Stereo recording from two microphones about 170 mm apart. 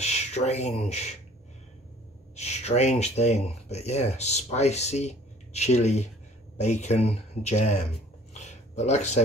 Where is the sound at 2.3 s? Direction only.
40° left (ahead or behind).